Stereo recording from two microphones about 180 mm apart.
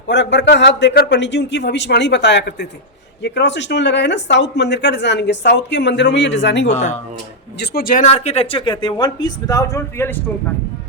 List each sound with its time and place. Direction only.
0.1 s speech: 80° left
6.7 s speech: 40° left (ahead or behind)
7.6 s speech: 60° left (ahead or behind)
8.0 s speech: 35° left (ahead or behind); by 10.3 s 15° left (ahead or behind)